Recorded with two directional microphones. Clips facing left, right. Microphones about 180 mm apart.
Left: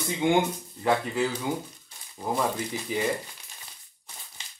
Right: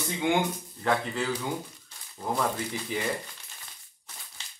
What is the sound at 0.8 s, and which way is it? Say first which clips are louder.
Speech: left 3 dB; 10° left (ahead or behind).